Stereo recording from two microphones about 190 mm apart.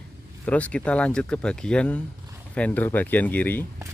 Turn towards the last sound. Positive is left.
turn(degrees=10)  # may be behind; listen again after turning